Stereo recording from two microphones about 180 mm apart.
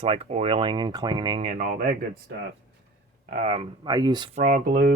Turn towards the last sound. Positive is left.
turn(degrees=-55)  # may be behind; listen again after turning